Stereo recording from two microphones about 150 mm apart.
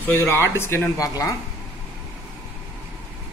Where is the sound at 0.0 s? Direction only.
15° left (ahead or behind).